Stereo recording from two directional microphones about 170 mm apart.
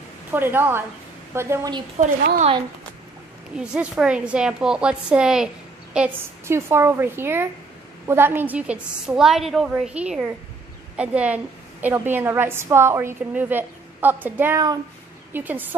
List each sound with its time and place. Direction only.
0.3 s a woman's voice: 10° right (ahead or behind)
3.5 s a woman's voice: 5° right (ahead or behind)